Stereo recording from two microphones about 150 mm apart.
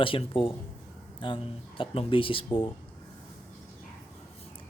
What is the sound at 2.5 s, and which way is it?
Speech, 15° left (ahead or behind).